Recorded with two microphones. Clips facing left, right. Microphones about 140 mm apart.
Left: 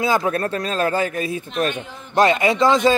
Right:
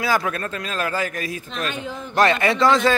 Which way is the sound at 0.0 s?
25° left (ahead or behind).